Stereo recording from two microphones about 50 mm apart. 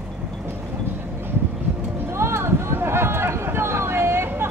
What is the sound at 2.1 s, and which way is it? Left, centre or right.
Music, right.